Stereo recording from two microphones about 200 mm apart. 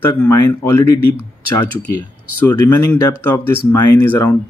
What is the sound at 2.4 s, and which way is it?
Speech, 15° left (ahead or behind).